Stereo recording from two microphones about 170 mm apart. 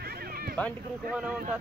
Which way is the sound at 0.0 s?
65° right (ahead or behind).